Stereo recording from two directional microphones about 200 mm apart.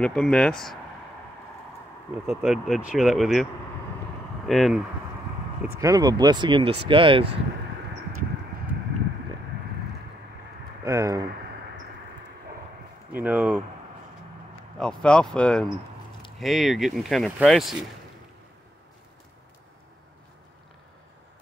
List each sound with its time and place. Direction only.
0.0 s speech: 5° left (ahead or behind)
2.2 s speech: centre (ahead or behind)
4.5 s speech: centre (ahead or behind)
5.8 s speech: 20° right (ahead or behind)
10.8 s speech: 15° right (ahead or behind)
13.1 s speech: 10° right (ahead or behind)
14.8 s speech: 5° left (ahead or behind)